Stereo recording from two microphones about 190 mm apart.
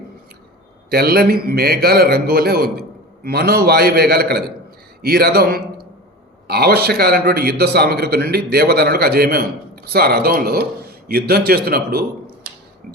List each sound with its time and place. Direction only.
0.9 s a man's voice: 55° right (ahead or behind)